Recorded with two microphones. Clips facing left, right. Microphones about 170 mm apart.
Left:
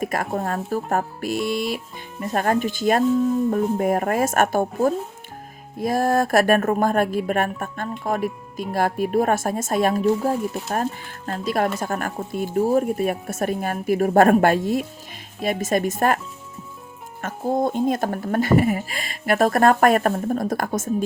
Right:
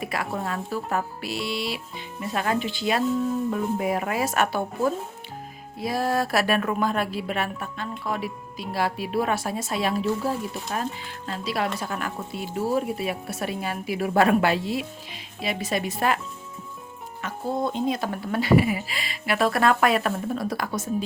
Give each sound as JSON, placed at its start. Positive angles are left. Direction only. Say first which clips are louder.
{"t": 0.0, "sound": "speech", "louder": "left 5 dB", "side_deg": 45}